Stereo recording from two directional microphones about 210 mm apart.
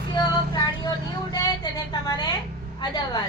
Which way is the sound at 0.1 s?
20° left (ahead or behind).